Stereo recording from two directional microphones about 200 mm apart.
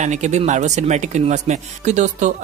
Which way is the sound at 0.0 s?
35° right (ahead or behind).